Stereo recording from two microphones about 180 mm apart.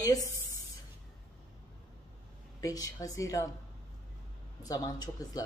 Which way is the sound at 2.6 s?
20° left (ahead or behind).